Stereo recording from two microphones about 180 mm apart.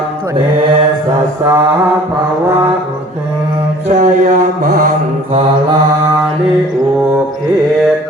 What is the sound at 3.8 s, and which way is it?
Mantra, 45° right (ahead or behind).